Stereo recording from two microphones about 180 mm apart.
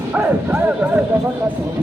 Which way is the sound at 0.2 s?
10° right (ahead or behind).